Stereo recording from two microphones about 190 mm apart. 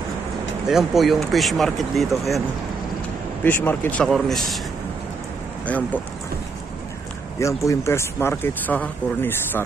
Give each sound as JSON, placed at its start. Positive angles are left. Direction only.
{"t": 0.7, "sound": "speech", "side_deg": 0}
{"t": 3.4, "sound": "speech", "side_deg": 10}
{"t": 7.3, "sound": "speech", "side_deg": 15}